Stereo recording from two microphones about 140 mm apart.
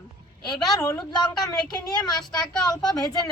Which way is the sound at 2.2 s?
5° left (ahead or behind).